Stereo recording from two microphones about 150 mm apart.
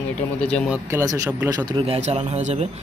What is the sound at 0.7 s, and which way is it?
Speech, 20° right (ahead or behind).